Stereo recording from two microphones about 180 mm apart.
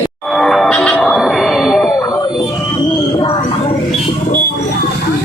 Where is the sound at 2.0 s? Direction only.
20° left (ahead or behind).